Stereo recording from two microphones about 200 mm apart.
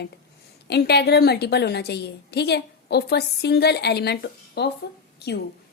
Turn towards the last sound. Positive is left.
turn(degrees=55)  # may be behind; listen again after turning